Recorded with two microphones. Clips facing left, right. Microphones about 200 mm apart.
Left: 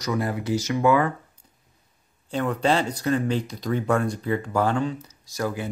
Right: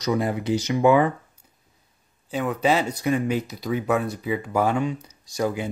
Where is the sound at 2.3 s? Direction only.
5° right (ahead or behind).